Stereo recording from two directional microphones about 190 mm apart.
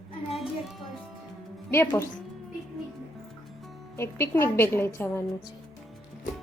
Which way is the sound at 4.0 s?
10° left (ahead or behind).